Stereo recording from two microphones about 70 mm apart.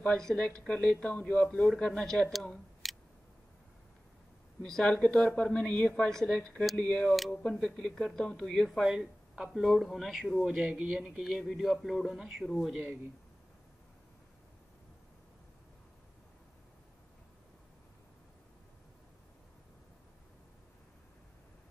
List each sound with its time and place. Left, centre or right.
0.2 s a woman's voice: centre
4.6 s a woman's voice: centre
8.6 s speech: centre
10.5 s speech: centre
11.1 s speech: centre